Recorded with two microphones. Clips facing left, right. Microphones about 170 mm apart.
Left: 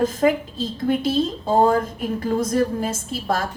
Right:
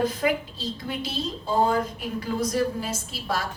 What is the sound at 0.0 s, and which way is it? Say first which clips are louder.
A woman's voice: left 5 dB; 45° left (ahead or behind).